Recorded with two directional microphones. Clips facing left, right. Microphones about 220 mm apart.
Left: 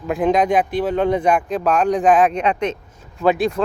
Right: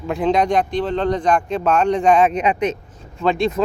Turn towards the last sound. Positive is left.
turn(degrees=5)  # may be behind; listen again after turning